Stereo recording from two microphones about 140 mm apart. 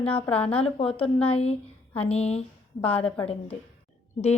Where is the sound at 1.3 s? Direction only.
45° left (ahead or behind).